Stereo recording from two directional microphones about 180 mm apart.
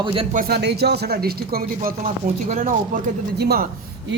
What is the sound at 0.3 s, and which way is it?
Speech, 60° right (ahead or behind).